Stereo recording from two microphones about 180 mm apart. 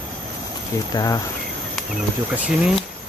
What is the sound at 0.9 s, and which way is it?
Speech, 20° left (ahead or behind).